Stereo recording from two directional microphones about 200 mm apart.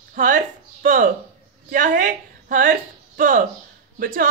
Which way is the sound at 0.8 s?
40° right (ahead or behind).